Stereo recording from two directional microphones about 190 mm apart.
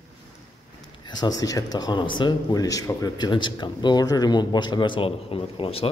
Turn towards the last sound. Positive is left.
turn(degrees=30)  # may be behind; listen again after turning